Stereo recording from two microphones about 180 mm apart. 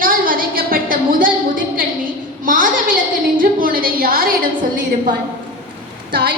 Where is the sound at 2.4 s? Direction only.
50° right (ahead or behind).